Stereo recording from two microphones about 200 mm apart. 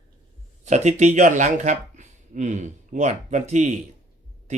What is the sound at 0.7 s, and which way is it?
Speech, 35° right (ahead or behind).